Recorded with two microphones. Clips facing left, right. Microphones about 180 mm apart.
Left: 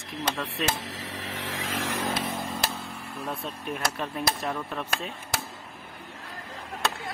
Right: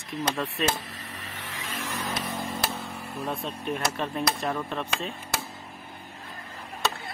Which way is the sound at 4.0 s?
Centre (ahead or behind).